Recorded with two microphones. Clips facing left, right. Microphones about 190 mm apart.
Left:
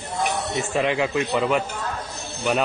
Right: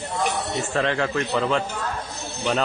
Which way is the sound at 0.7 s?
15° left (ahead or behind).